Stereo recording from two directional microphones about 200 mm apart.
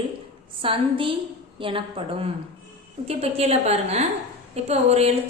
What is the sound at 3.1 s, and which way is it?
A woman's voice, 30° right (ahead or behind).